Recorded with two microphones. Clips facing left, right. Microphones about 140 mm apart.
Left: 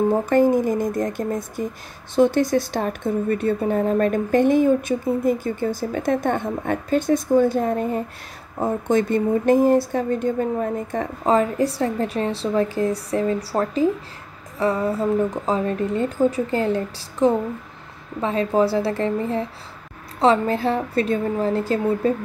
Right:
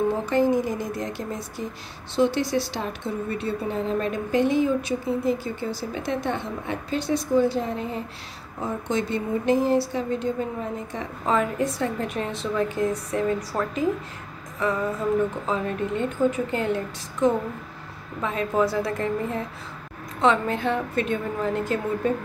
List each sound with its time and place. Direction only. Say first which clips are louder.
0.3 s a woman's voice: left 4 dB; 50° left (ahead or behind)
11.2 s speech: left 4 dB; 35° left (ahead or behind)